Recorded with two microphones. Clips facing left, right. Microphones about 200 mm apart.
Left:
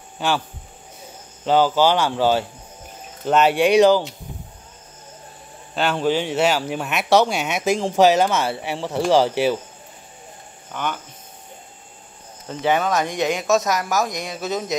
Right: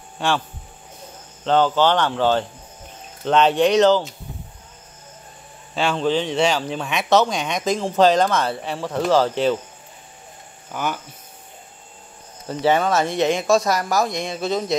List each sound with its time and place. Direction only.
0.2 s speech: centre (ahead or behind)
1.4 s speech: 10° left (ahead or behind)
5.8 s speech: 5° left (ahead or behind)
10.7 s speech: 5° right (ahead or behind)
12.4 s speech: centre (ahead or behind)
12.9 s speech: 15° left (ahead or behind)
13.2 s speech: 35° right (ahead or behind)
13.5 s speech: 5° left (ahead or behind)